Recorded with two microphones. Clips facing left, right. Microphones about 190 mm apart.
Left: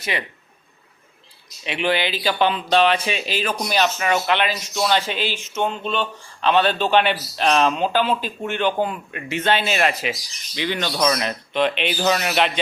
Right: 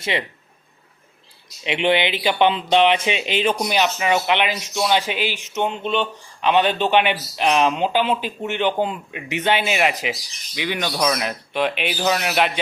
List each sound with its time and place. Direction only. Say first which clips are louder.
0.0 s speech: right 3 dB; 25° right (ahead or behind)
1.6 s speech: right 3 dB; 20° right (ahead or behind); by 12.5 s 5° right (ahead or behind)